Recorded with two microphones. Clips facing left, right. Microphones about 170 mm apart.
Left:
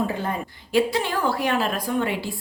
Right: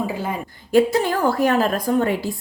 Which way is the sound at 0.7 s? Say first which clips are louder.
Right 5 dB; 45° right (ahead or behind).